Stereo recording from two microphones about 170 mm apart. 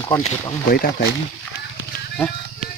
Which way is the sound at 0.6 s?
60° left (ahead or behind).